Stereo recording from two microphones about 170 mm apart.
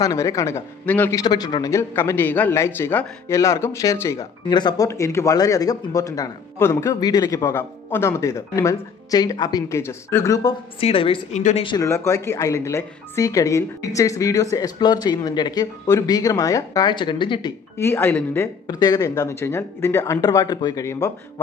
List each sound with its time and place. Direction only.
0.0 s speech: 20° left (ahead or behind)
1.2 s speech: 25° left (ahead or behind)
10.8 s a woman's voice: 35° left (ahead or behind)
17.7 s speech: 15° left (ahead or behind)